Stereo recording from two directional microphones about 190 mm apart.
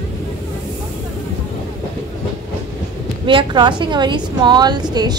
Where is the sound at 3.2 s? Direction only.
25° right (ahead or behind).